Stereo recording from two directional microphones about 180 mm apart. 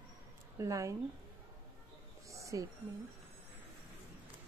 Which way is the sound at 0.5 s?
15° right (ahead or behind).